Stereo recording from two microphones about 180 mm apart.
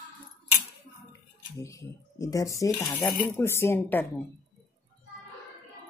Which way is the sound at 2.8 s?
10° left (ahead or behind).